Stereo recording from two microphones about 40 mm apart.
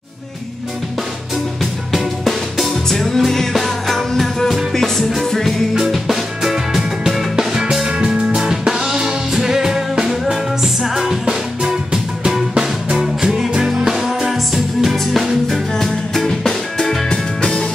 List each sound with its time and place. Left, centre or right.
1.6 s music: centre
5.9 s music: centre
7.8 s music: right; by 15.6 s centre
15.8 s music: centre